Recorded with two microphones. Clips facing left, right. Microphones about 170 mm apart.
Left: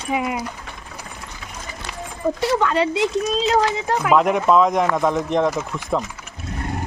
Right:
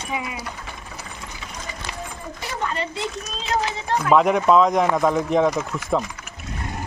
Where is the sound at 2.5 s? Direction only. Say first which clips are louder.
Left 6 dB; 90° left.